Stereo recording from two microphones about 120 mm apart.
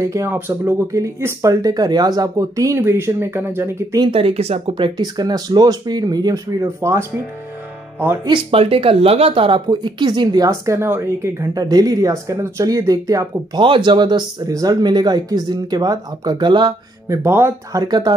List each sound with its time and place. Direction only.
0.0 s speech: 25° right (ahead or behind)
4.0 s speech: 50° right (ahead or behind); by 7.1 s 25° right (ahead or behind)
8.3 s speech: 50° right (ahead or behind)
9.7 s speech: 40° right (ahead or behind)
13.6 s speech: 40° right (ahead or behind)
17.1 s speech: 20° right (ahead or behind)
17.8 s speech: 35° right (ahead or behind)